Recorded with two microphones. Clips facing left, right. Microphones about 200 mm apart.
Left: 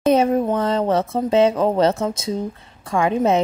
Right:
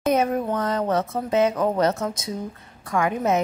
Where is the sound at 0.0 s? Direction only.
30° left (ahead or behind).